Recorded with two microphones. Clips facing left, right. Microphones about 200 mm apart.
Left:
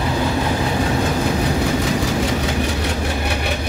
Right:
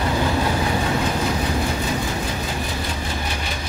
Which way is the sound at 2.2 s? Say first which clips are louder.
Left 6 dB; 85° left.